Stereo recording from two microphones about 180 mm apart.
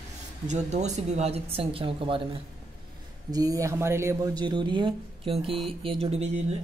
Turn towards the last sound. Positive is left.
turn(degrees=-35)  # may be behind; listen again after turning